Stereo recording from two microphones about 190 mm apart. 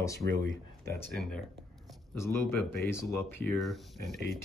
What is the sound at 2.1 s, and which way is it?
Speech, 15° left (ahead or behind).